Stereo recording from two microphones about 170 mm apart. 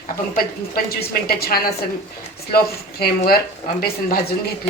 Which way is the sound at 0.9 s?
65° left (ahead or behind).